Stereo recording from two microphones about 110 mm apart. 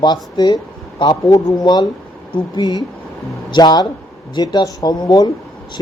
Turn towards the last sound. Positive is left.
turn(degrees=40)  # may be behind; listen again after turning